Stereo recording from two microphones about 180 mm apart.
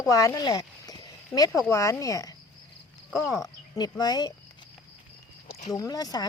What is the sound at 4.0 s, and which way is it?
Speech, 20° left (ahead or behind).